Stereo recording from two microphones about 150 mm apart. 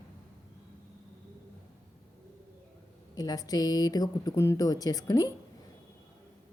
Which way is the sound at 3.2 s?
25° left (ahead or behind).